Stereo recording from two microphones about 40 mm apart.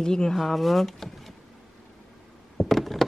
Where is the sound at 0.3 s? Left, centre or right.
Centre.